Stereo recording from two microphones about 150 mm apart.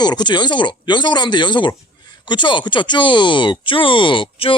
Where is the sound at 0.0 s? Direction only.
30° left (ahead or behind).